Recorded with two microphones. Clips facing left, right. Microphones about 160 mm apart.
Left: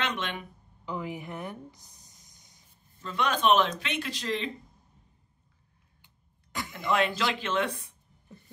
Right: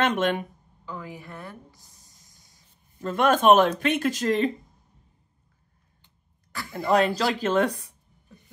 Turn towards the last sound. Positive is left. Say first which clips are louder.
# right 7 dB
turn(degrees=-40)  # may be behind; listen again after turning